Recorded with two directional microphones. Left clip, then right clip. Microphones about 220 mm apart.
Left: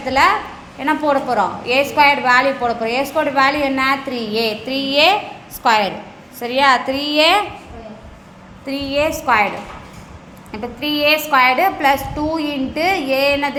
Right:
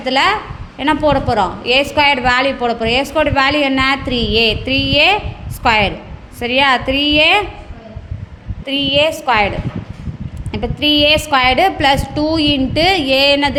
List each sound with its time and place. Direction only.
0.0 s a woman's voice: 40° right (ahead or behind)
8.6 s a woman's voice: 40° right (ahead or behind)
10.5 s a woman's voice: 45° right (ahead or behind)